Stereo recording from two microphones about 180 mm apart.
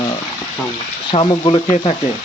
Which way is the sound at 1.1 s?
25° left (ahead or behind).